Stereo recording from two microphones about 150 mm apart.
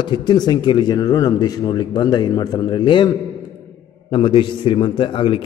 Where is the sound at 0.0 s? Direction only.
30° left (ahead or behind).